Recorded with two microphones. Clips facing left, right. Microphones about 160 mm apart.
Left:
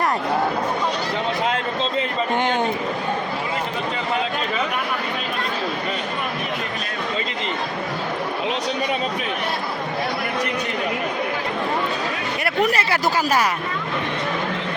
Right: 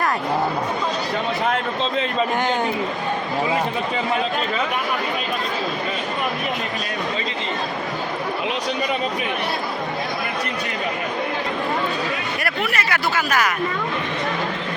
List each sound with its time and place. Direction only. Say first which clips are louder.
12.5 s speech: left 7 dB; 35° left (ahead or behind)